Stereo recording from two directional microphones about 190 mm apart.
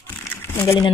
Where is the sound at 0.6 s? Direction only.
30° left (ahead or behind).